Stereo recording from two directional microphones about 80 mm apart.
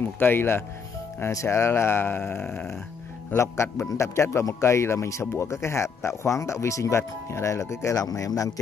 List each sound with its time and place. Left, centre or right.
0.2 s speech: left